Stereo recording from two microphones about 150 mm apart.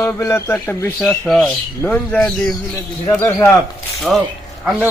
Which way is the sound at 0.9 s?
Centre (ahead or behind).